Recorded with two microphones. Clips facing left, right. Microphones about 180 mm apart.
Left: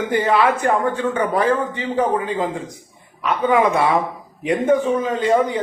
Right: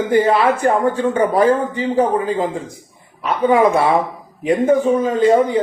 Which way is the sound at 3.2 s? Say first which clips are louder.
Right 3 dB; 40° right (ahead or behind).